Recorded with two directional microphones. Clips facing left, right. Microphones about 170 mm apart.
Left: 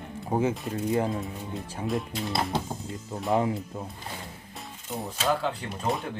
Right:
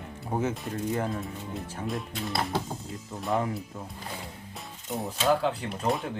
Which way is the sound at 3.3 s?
25° left (ahead or behind).